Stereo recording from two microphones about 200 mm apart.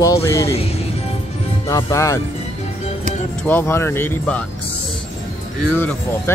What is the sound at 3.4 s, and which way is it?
Speech, 10° left (ahead or behind).